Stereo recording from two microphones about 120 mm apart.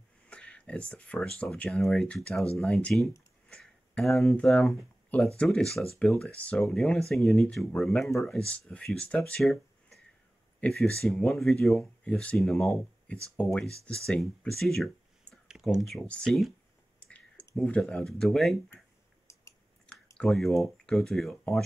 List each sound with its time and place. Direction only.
0.3 s speech: 10° left (ahead or behind)
10.6 s speech: 5° left (ahead or behind)
17.6 s speech: 5° left (ahead or behind)
20.2 s speech: centre (ahead or behind)